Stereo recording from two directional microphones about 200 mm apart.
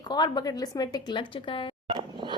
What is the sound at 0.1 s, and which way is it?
A woman's voice, 20° left (ahead or behind).